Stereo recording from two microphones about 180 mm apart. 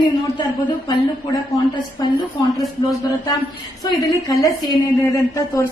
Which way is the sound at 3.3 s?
20° left (ahead or behind).